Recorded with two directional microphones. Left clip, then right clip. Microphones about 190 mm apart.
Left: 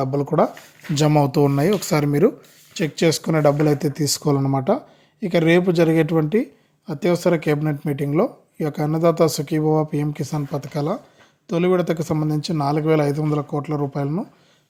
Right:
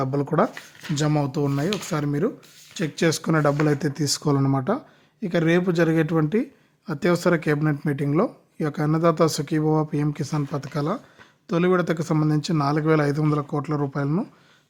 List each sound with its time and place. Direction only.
0.0 s speech: centre (ahead or behind)
0.9 s speech: 20° left (ahead or behind)
2.7 s speech: 5° left (ahead or behind)